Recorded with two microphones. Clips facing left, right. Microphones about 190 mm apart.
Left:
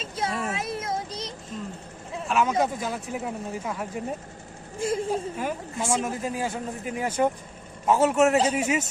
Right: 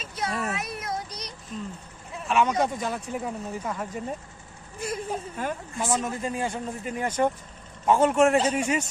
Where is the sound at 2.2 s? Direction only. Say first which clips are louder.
Even; centre (ahead or behind).